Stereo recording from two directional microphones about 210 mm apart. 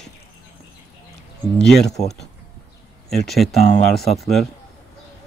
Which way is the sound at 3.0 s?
Centre (ahead or behind).